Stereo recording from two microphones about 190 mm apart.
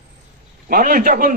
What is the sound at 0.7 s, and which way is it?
Speech, 50° right (ahead or behind).